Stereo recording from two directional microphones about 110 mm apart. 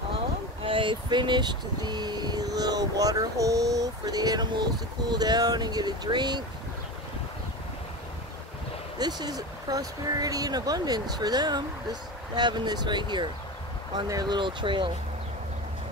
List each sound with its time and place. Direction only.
0.7 s speech: 50° right (ahead or behind)
8.9 s speech: 40° right (ahead or behind)